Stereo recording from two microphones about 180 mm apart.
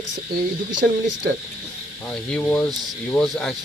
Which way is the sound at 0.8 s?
70° right (ahead or behind).